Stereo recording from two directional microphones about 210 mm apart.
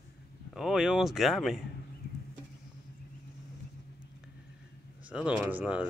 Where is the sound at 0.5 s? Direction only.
Centre (ahead or behind).